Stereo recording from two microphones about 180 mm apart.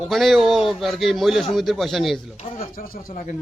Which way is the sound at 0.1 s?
Centre (ahead or behind).